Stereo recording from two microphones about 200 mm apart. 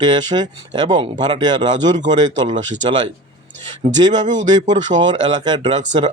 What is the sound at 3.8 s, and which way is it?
Speech, 20° right (ahead or behind).